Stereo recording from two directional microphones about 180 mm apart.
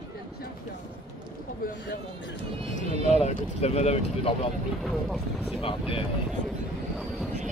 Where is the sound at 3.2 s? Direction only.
35° left (ahead or behind).